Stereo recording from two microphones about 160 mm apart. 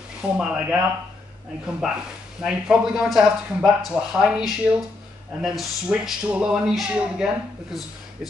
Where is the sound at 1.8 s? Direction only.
5° right (ahead or behind).